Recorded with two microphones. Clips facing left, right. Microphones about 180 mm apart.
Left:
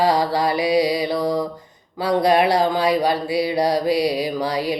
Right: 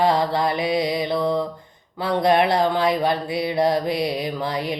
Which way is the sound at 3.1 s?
5° left (ahead or behind).